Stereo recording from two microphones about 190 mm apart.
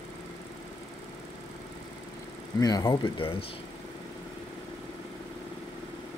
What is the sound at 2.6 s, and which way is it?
Speech, 20° left (ahead or behind).